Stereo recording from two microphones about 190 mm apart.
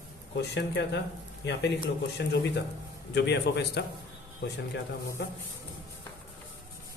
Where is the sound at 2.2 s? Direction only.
60° left (ahead or behind).